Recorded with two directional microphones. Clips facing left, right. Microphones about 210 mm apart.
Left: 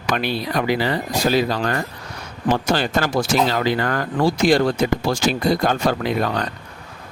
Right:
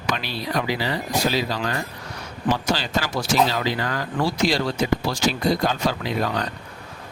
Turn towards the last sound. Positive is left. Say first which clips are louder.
# left 3 dB
turn(degrees=55)  # may be behind; listen again after turning